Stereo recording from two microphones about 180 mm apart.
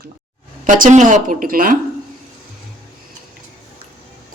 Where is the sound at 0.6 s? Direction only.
45° right (ahead or behind).